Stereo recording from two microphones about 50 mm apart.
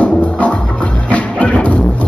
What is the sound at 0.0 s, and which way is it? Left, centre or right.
Music, left.